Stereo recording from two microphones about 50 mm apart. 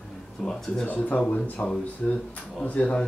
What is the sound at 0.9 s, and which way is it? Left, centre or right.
Speech, left.